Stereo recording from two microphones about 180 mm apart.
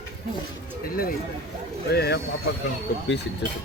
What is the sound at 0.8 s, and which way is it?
Speech, 55° left (ahead or behind).